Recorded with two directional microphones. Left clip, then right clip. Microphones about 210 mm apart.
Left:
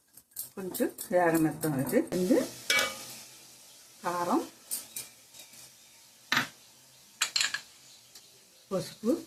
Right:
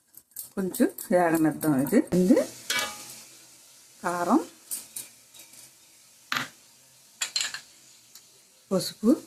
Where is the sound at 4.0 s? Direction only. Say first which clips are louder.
Right 5 dB; 55° right (ahead or behind).